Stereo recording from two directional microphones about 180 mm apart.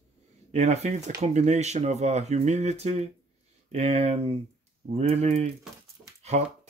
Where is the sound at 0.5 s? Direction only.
35° right (ahead or behind).